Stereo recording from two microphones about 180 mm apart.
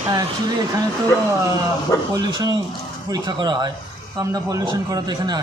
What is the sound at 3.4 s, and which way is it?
A man's voice, 20° right (ahead or behind).